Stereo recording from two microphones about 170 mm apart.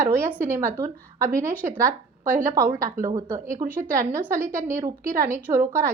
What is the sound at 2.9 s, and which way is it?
Speech, 20° right (ahead or behind).